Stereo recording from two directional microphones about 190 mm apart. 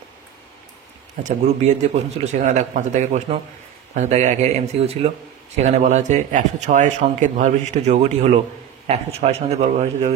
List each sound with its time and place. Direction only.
1.2 s a man's voice: 35° right (ahead or behind)